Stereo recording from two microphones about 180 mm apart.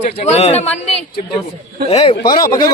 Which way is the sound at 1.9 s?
35° left (ahead or behind).